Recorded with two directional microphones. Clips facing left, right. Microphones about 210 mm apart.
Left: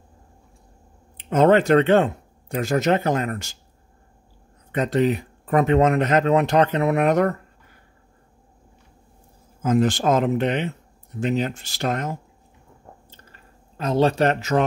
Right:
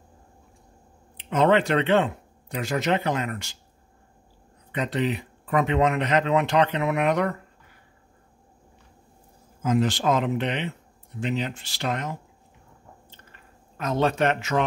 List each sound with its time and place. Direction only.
1.1 s speech: 45° left (ahead or behind)
4.7 s speech: 45° left (ahead or behind)
9.6 s speech: 45° left (ahead or behind)
13.1 s chewing: 35° left (ahead or behind)